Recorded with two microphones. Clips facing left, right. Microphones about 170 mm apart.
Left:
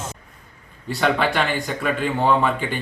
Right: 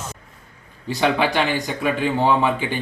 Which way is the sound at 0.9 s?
10° right (ahead or behind).